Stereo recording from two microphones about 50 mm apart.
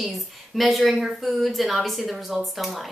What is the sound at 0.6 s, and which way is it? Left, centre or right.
Speech, centre.